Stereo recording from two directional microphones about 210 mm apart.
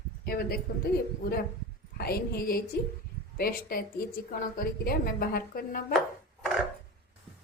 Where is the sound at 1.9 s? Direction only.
50° left (ahead or behind).